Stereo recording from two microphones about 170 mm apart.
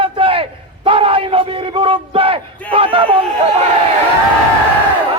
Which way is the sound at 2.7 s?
30° right (ahead or behind).